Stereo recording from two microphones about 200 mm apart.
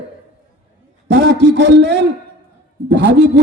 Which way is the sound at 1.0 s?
60° right (ahead or behind).